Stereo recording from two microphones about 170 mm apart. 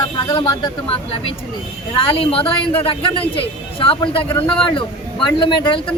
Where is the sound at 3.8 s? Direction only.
30° left (ahead or behind).